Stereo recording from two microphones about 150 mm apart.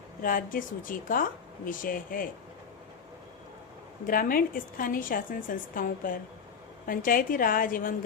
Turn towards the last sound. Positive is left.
turn(degrees=70)  # may be behind; listen again after turning